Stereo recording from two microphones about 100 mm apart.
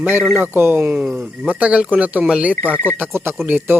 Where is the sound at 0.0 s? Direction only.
20° right (ahead or behind).